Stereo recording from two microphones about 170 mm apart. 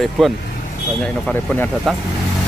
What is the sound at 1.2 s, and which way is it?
Speech, 10° left (ahead or behind).